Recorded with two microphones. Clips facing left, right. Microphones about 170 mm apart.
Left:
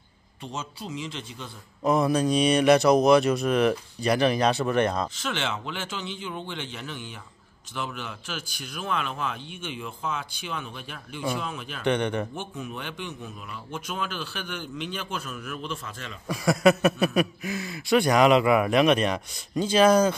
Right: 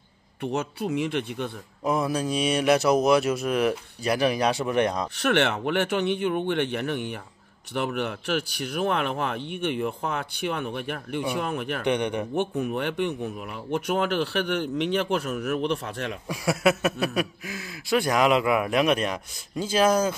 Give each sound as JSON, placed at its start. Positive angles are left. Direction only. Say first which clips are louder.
{"t": 0.4, "sound": "a man's voice", "louder": "right 8 dB", "side_deg": -60}
{"t": 1.9, "sound": "speech", "louder": "left 3 dB", "side_deg": -5}
{"t": 5.1, "sound": "a man's voice", "louder": "right 8 dB", "side_deg": -65}
{"t": 11.8, "sound": "speech", "louder": "left 2 dB", "side_deg": -15}
{"t": 12.4, "sound": "a man's voice", "louder": "right 9 dB", "side_deg": -65}
{"t": 16.3, "sound": "speech", "louder": "left 3 dB", "side_deg": -5}